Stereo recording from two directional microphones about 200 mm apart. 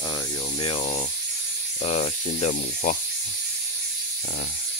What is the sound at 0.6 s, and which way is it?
Speech, 25° left (ahead or behind).